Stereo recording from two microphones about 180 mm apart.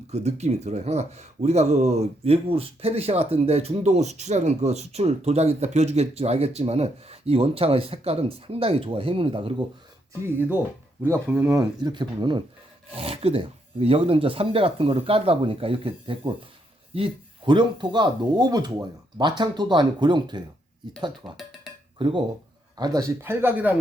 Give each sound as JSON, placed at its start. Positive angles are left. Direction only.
{"t": 0.1, "sound": "speech", "side_deg": -35}
{"t": 10.2, "sound": "speech", "side_deg": -10}
{"t": 21.3, "sound": "a sound", "side_deg": 0}
{"t": 21.9, "sound": "speech", "side_deg": -25}